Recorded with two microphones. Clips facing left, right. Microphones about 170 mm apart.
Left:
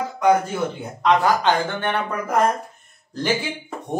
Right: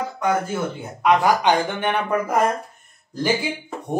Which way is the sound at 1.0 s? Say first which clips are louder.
Right 1 dB; 10° right (ahead or behind).